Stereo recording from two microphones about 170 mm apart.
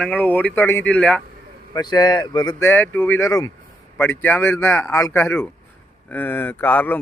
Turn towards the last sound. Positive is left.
turn(degrees=10)  # may be behind; listen again after turning